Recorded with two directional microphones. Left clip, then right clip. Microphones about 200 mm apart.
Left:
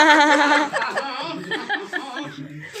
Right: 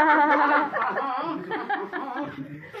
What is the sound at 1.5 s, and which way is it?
Chuckle, centre (ahead or behind).